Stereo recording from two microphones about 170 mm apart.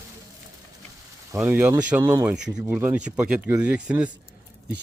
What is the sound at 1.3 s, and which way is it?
Speech, 15° right (ahead or behind).